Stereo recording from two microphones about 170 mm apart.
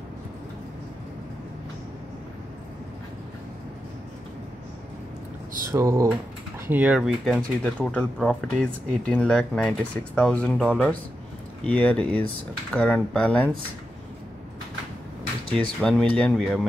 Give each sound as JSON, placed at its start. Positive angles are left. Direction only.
{"t": 5.7, "sound": "speech", "side_deg": -20}
{"t": 15.8, "sound": "speech", "side_deg": 5}